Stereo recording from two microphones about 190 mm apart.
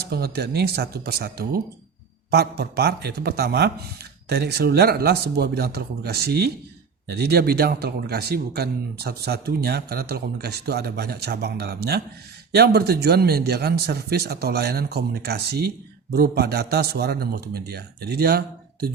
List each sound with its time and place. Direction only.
0.1 s speech: 60° right (ahead or behind)